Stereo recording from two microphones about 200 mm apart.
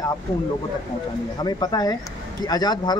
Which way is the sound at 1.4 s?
20° left (ahead or behind).